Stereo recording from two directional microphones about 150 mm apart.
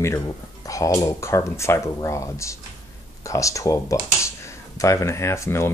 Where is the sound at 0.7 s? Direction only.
20° left (ahead or behind).